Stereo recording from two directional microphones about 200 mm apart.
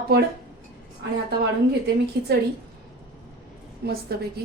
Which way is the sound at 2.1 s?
55° right (ahead or behind).